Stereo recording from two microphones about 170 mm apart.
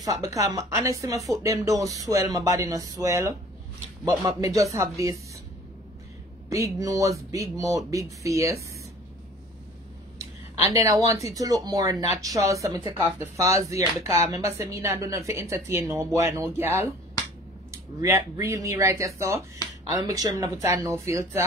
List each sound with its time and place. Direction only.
0.0 s speech: 20° right (ahead or behind)
6.5 s speech: 20° right (ahead or behind)
10.6 s speech: 20° right (ahead or behind)